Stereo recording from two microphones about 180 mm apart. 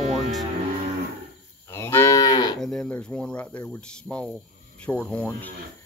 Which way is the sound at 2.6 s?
5° left (ahead or behind).